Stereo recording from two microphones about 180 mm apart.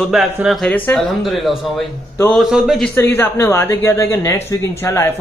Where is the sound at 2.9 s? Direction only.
10° left (ahead or behind).